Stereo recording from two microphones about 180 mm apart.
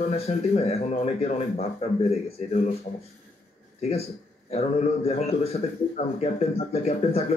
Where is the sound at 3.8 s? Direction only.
35° left (ahead or behind).